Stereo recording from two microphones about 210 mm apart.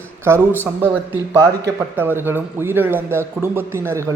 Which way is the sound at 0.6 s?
10° right (ahead or behind).